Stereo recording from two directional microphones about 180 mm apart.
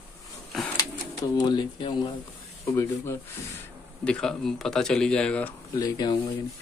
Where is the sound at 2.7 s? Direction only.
15° left (ahead or behind).